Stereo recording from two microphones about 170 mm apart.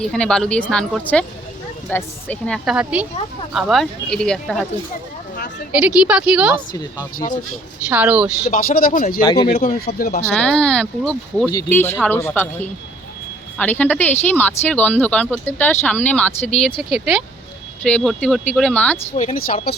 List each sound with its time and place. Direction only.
0.0 s speech: 5° left (ahead or behind)
2.7 s a woman's voice: 5° right (ahead or behind)
6.1 s a woman's voice: 5° right (ahead or behind)
7.2 s speech: 55° left (ahead or behind)
7.9 s a woman's voice: 10° right (ahead or behind)
8.4 s speech: 55° left (ahead or behind)
9.2 s speech: 25° left (ahead or behind)
9.6 s speech: 60° left (ahead or behind)
10.3 s speech: 5° left (ahead or behind)
19.1 s speech: 50° left (ahead or behind)